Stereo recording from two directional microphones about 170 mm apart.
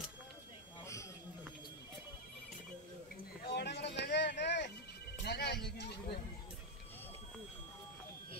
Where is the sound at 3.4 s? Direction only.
80° left.